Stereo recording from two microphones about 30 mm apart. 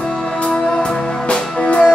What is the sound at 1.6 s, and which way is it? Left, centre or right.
Music, left.